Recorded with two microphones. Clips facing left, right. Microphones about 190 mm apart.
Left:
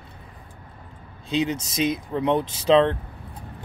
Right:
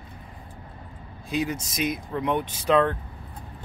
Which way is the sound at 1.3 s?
25° left (ahead or behind).